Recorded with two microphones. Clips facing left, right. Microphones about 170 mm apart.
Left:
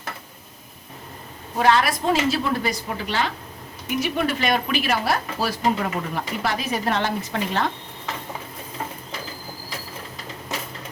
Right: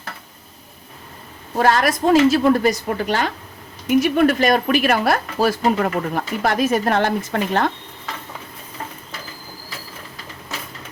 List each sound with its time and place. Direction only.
1.5 s speech: 45° right (ahead or behind)